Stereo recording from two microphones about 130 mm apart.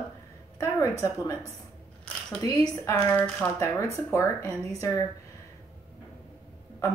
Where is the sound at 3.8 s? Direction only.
25° left (ahead or behind).